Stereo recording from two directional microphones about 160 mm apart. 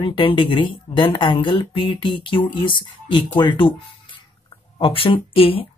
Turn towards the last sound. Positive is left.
turn(degrees=35)  # may be behind; listen again after turning